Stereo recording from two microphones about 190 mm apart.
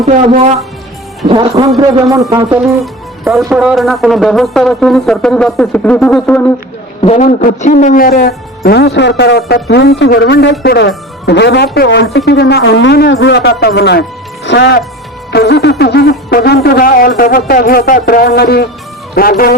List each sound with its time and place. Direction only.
0.0 s a man's voice: 35° right (ahead or behind)
1.6 s a man's voice: 15° right (ahead or behind)
2.8 s music: centre (ahead or behind)
3.5 s speech: 5° right (ahead or behind)
7.0 s speech: 40° left (ahead or behind); by 19.5 s 55° left (ahead or behind)